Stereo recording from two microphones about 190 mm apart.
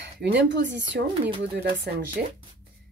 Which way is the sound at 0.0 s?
65° right (ahead or behind).